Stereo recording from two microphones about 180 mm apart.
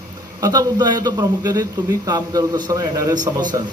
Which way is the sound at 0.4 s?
20° right (ahead or behind).